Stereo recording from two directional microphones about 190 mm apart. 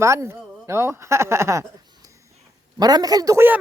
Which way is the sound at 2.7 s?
20° right (ahead or behind).